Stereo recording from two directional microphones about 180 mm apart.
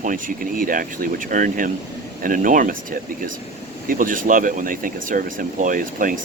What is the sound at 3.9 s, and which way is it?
Speech, 50° right (ahead or behind).